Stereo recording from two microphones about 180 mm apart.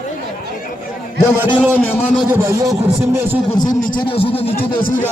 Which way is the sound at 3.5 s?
20° left (ahead or behind).